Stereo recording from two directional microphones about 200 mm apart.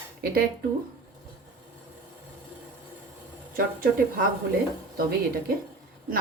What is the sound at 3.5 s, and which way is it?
Speech, 45° right (ahead or behind).